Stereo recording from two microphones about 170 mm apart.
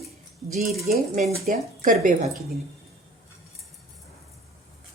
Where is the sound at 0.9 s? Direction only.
50° right (ahead or behind).